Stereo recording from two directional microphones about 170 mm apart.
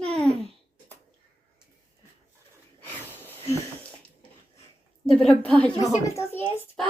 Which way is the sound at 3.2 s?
10° left (ahead or behind).